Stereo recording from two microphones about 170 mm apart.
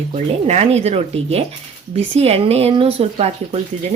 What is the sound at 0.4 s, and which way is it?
Speech, 40° right (ahead or behind).